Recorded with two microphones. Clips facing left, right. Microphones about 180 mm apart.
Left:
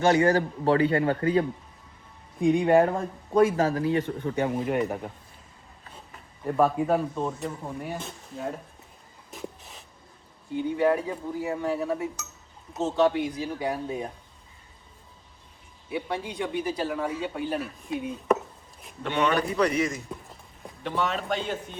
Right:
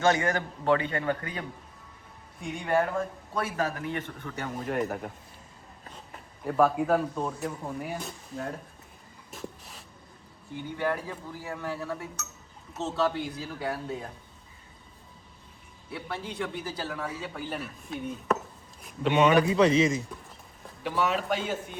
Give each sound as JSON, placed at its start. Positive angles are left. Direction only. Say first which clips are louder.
{"t": 0.1, "sound": "a man's voice", "louder": "left 6 dB", "side_deg": 35}
{"t": 2.5, "sound": "a man's voice", "louder": "left 7 dB", "side_deg": 35}
{"t": 4.4, "sound": "speech", "louder": "left 4 dB", "side_deg": 10}
{"t": 6.4, "sound": "speech", "louder": "left 1 dB", "side_deg": 0}
{"t": 9.3, "sound": "writing", "louder": "left 2 dB", "side_deg": 0}
{"t": 10.8, "sound": "speech", "louder": "left 6 dB", "side_deg": 25}
{"t": 15.9, "sound": "speech", "louder": "left 5 dB", "side_deg": 20}
{"t": 17.2, "sound": "speech", "louder": "left 6 dB", "side_deg": 0}
{"t": 19.0, "sound": "a man's voice", "louder": "right 4 dB", "side_deg": -15}
{"t": 20.8, "sound": "speech", "louder": "right 1 dB", "side_deg": -5}